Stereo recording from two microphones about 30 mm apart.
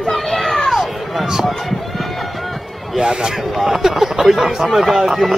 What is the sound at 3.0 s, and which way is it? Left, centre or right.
Speech, right.